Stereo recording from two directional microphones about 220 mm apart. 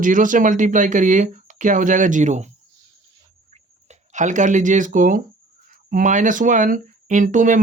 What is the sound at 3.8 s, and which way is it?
Speech, 35° right (ahead or behind).